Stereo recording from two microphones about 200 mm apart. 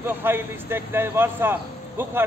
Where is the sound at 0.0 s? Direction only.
10° right (ahead or behind).